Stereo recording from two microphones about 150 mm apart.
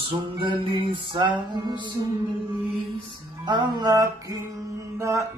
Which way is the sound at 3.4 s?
30° right (ahead or behind).